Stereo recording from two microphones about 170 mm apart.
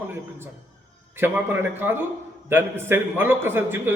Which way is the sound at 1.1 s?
10° right (ahead or behind).